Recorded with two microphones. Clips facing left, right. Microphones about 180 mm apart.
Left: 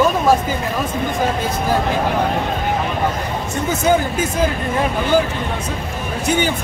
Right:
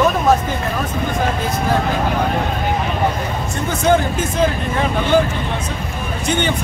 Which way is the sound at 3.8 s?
5° left (ahead or behind).